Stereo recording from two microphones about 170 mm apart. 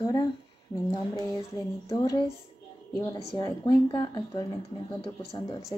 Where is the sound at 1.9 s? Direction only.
20° left (ahead or behind).